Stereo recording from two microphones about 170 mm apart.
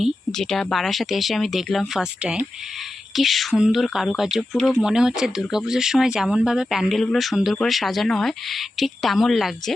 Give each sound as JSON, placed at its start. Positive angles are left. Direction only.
{"t": 0.0, "sound": "speech", "side_deg": 0}